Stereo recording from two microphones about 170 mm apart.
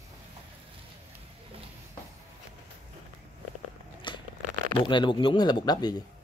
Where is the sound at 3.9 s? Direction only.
30° left (ahead or behind).